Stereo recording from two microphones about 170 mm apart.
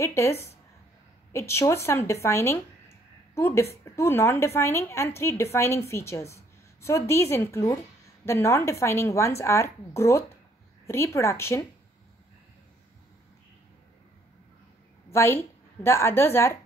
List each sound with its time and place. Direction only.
0.0 s a woman's voice: 15° left (ahead or behind)
15.0 s a woman's voice: 15° left (ahead or behind)